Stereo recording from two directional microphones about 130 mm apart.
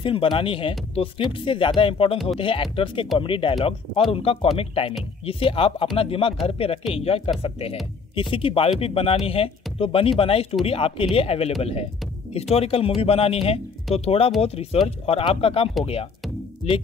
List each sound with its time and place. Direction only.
0.0 s speech: 40° left (ahead or behind)
8.2 s speech: 40° left (ahead or behind)